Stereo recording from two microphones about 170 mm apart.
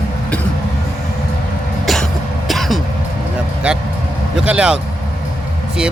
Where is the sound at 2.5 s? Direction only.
Centre (ahead or behind).